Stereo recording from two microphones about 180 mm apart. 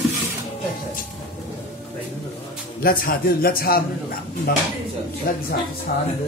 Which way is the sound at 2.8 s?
55° left (ahead or behind).